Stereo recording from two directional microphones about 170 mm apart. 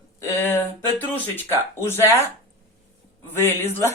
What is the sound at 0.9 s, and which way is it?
Speech, 15° left (ahead or behind).